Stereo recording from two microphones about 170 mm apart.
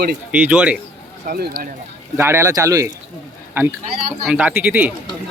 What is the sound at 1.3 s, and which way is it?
Speech, 60° right (ahead or behind).